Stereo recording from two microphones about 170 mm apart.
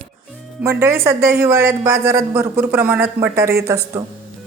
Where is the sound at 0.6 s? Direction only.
15° right (ahead or behind).